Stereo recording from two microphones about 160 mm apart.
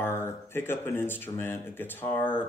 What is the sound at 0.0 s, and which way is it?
Speech, 15° left (ahead or behind).